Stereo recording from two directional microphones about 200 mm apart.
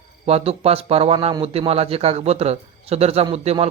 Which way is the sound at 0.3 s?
30° right (ahead or behind).